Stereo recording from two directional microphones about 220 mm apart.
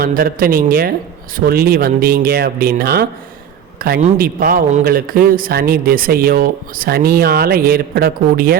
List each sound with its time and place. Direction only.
0.0 s a man's voice: 40° right (ahead or behind)